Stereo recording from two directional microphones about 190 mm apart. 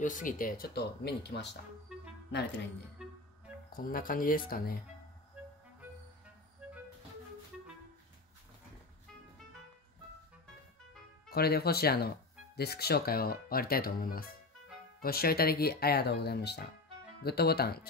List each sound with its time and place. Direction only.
0.0 s speech: 45° left (ahead or behind); by 1.6 s 60° left (ahead or behind)
3.7 s speech: 50° left (ahead or behind)
11.2 s speech: 55° left (ahead or behind)